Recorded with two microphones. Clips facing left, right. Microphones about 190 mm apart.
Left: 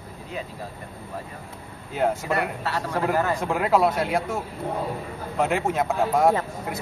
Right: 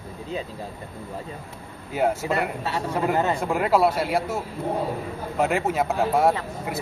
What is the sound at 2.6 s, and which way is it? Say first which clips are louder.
Speech: right 1 dB; 20° right (ahead or behind).